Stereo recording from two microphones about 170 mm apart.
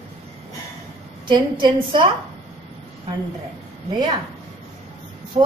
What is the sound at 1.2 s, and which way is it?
Speech, 25° right (ahead or behind).